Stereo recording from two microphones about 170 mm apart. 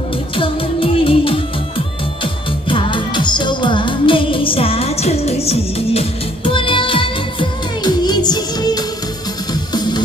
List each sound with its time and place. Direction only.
0.4 s music: 30° left (ahead or behind)
2.7 s music: 30° left (ahead or behind)